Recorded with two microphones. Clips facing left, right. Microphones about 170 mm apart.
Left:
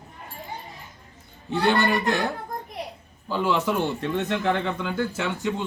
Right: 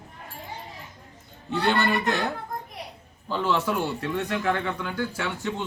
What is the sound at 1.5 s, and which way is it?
Speech, 15° left (ahead or behind).